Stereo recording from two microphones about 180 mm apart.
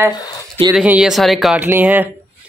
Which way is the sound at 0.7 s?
5° right (ahead or behind).